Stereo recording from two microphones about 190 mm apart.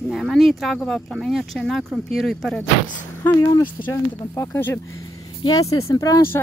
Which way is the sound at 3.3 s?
15° left (ahead or behind).